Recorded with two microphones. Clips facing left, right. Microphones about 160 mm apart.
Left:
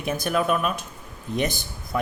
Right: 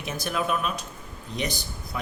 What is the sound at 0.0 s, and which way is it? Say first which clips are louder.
A man's voice: left 5 dB; 50° left (ahead or behind).